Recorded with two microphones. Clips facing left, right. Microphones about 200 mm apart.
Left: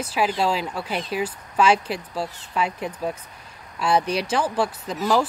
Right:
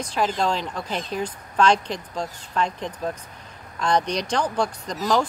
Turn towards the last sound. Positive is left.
turn(degrees=5)  # may be behind; listen again after turning